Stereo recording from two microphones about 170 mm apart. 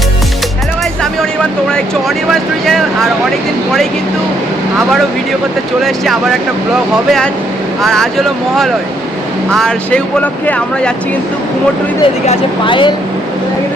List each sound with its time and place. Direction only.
2.3 s speech: centre (ahead or behind)
5.8 s speech: centre (ahead or behind)
9.5 s speech: 5° left (ahead or behind)
12.2 s speech: 35° left (ahead or behind)